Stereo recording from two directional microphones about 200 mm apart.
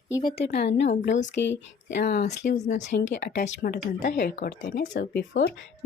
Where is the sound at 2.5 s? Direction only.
35° left (ahead or behind).